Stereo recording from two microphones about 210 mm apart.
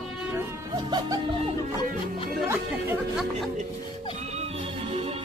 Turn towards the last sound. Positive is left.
turn(degrees=-10)  # may be behind; listen again after turning